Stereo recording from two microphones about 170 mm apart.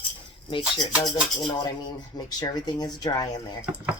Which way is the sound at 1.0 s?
25° left (ahead or behind).